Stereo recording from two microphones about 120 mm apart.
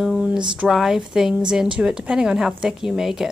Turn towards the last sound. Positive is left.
turn(degrees=-5)  # may be behind; listen again after turning